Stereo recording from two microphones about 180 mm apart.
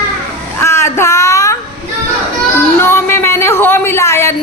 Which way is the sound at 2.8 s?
15° left (ahead or behind).